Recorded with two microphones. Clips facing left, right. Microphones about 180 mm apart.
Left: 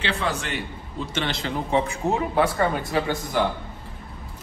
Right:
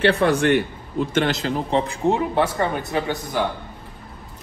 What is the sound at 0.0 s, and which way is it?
Speech, 60° right (ahead or behind).